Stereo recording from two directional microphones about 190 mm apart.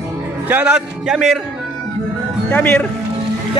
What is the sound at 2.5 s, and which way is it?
Speech, 10° left (ahead or behind).